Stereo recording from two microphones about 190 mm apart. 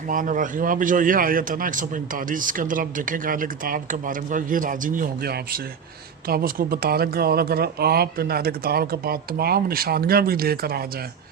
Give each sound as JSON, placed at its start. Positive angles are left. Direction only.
{"t": 0.1, "sound": "a man's voice", "side_deg": -45}